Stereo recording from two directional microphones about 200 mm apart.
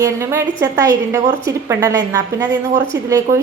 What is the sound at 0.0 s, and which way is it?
A woman's voice, 15° right (ahead or behind).